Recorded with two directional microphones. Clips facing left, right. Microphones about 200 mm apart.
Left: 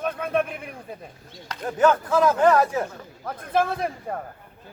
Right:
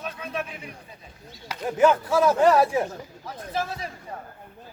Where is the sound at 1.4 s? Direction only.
10° right (ahead or behind).